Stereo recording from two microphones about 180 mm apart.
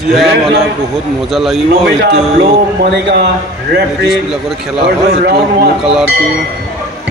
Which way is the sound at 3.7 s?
65° right (ahead or behind).